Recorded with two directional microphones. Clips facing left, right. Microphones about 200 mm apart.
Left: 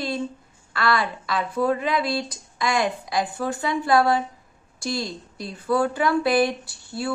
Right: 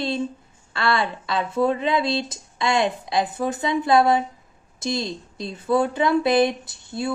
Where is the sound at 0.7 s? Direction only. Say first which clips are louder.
Even; 25° right (ahead or behind).